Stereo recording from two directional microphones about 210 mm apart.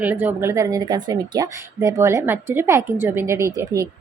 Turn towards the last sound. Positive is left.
turn(degrees=-15)  # may be behind; listen again after turning